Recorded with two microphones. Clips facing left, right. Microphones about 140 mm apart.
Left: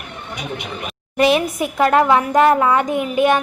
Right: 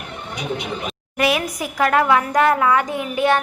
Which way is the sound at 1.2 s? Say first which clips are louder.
Left 5 dB; 25° left (ahead or behind).